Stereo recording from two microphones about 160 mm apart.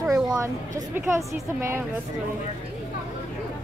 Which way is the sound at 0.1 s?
20° right (ahead or behind).